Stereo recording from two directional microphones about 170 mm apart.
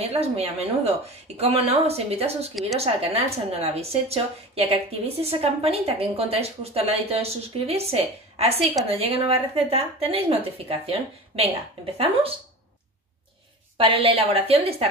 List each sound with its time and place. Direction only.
0.0 s speech: 35° right (ahead or behind)
3.5 s speech: 35° right (ahead or behind)
8.5 s a woman's voice: centre (ahead or behind)
8.9 s speech: 35° right (ahead or behind)
13.7 s speech: 35° right (ahead or behind)